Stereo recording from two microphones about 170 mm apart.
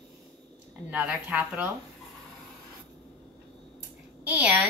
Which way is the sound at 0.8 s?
10° right (ahead or behind).